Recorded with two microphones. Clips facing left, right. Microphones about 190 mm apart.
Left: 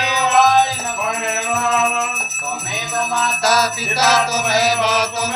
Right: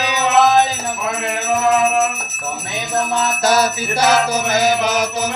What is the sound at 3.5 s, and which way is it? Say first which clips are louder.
Music: right 2 dB; 50° right (ahead or behind).